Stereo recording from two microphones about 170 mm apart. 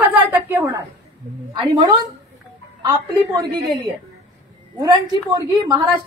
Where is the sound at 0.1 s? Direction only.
15° right (ahead or behind).